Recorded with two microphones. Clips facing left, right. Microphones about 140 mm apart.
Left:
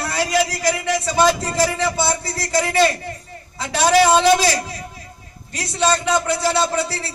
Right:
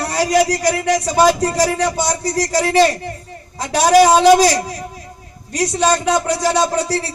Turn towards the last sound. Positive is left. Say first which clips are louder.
# right 4 dB
turn(degrees=-40)  # may be behind; listen again after turning